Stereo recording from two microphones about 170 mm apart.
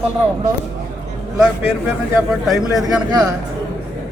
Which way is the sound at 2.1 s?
Centre (ahead or behind).